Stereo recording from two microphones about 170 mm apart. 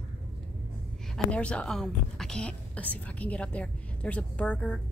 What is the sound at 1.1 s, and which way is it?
A woman's voice, 5° left (ahead or behind).